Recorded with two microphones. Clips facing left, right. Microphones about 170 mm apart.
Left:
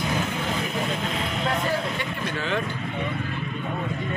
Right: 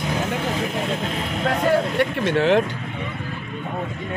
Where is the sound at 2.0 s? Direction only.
70° right (ahead or behind).